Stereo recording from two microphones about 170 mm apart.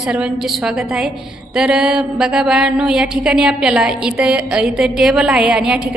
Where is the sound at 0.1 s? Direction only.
5° right (ahead or behind).